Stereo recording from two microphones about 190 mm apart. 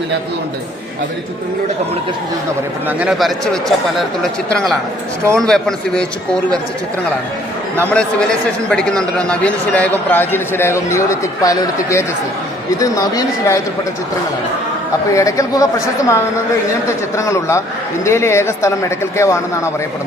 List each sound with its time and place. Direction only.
3.0 s speech: centre (ahead or behind)
7.8 s a man's voice: 10° left (ahead or behind)
15.1 s a man's voice: 15° left (ahead or behind)